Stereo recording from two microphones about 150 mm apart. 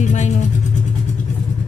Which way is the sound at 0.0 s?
55° left (ahead or behind).